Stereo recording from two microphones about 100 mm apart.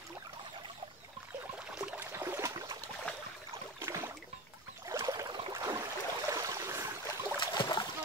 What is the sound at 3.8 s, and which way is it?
Boat, 25° right (ahead or behind).